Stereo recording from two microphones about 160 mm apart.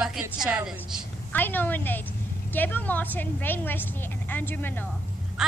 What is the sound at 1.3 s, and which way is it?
A woman's voice, 10° left (ahead or behind).